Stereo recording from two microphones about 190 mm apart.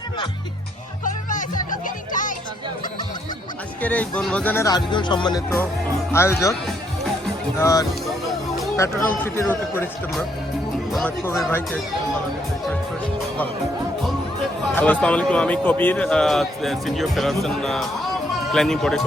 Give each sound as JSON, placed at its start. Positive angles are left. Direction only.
{"t": 1.0, "sound": "music", "side_deg": 45}
{"t": 3.8, "sound": "speech", "side_deg": 10}
{"t": 7.6, "sound": "speech", "side_deg": 20}
{"t": 14.8, "sound": "a man's voice", "side_deg": 10}